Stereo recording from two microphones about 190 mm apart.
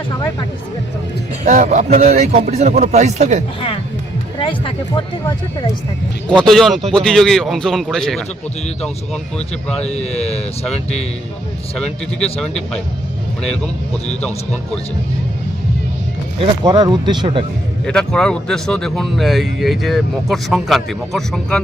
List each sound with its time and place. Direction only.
1.5 s a man's voice: 40° right (ahead or behind)
4.4 s speech: 25° left (ahead or behind)
6.2 s speech: 5° left (ahead or behind)
9.6 s speech: 5° left (ahead or behind)
9.9 s speech: 35° left (ahead or behind)
12.4 s speech: 5° left (ahead or behind)
16.4 s speech: 20° right (ahead or behind)
17.8 s speech: 5° left (ahead or behind)